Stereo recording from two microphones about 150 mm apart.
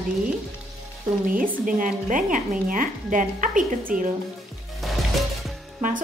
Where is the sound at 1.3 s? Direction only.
65° right (ahead or behind).